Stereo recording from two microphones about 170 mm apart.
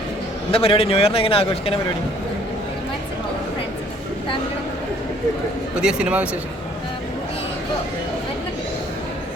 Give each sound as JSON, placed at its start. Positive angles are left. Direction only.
{"t": 0.5, "sound": "a man's voice", "side_deg": 35}
{"t": 5.8, "sound": "speech", "side_deg": -5}